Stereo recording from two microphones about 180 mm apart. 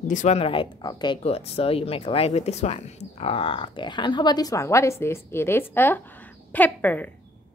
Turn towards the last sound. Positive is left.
turn(degrees=10)  # may be behind; listen again after turning